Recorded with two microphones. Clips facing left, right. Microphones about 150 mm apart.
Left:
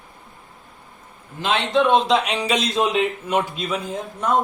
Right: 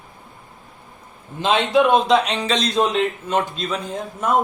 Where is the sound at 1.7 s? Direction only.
5° right (ahead or behind).